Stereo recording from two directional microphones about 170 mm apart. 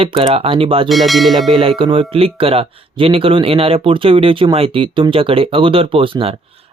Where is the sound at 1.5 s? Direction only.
30° right (ahead or behind).